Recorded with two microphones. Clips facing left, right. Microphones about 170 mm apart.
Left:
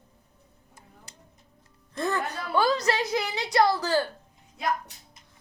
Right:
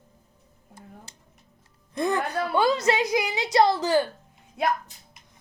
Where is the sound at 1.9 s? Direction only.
15° right (ahead or behind).